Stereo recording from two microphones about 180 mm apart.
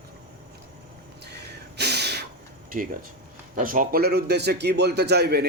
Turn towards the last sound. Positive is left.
turn(degrees=-65)  # may be behind; listen again after turning